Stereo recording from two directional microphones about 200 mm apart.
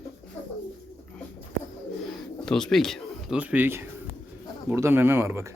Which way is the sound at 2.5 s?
Centre (ahead or behind).